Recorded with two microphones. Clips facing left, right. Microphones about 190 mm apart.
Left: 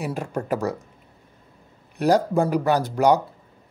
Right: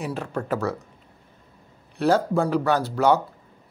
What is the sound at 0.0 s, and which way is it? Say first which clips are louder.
Speech: left 1 dB; 10° left (ahead or behind).